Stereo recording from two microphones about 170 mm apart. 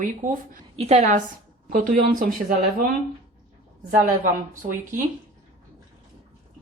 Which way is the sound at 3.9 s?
50° right (ahead or behind).